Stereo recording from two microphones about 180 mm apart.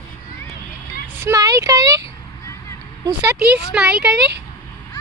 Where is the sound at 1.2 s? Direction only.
20° right (ahead or behind).